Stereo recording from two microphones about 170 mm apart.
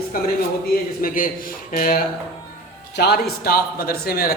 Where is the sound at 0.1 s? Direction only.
60° left (ahead or behind).